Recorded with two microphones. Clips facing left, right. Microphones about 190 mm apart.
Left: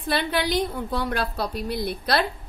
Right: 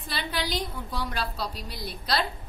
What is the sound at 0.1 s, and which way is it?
A woman's voice, 55° left (ahead or behind).